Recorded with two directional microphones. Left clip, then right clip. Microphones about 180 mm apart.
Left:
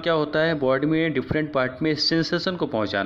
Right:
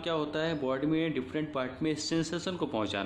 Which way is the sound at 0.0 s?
30° left (ahead or behind).